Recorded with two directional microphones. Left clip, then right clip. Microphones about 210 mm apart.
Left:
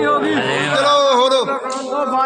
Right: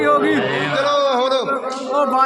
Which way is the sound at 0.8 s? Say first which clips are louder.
Left 4 dB; 30° left (ahead or behind).